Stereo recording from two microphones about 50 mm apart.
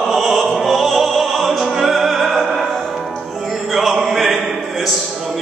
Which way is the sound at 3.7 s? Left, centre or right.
Centre.